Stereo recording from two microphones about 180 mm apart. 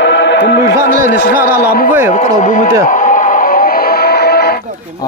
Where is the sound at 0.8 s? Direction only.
55° left (ahead or behind).